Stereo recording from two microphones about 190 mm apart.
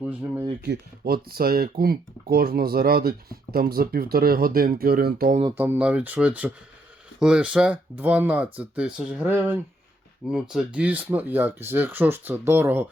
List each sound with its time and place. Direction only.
0.0 s speech: 10° right (ahead or behind)
0.6 s speech: 55° right (ahead or behind)
5.5 s speech: 10° right (ahead or behind)